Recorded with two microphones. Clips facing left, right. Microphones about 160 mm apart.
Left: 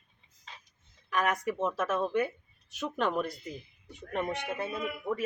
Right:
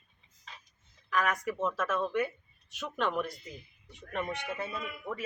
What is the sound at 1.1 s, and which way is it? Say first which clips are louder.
A woman's voice: left 1 dB; 25° left (ahead or behind).